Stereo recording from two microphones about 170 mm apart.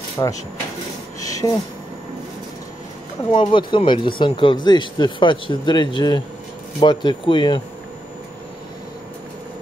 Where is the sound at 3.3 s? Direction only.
30° left (ahead or behind).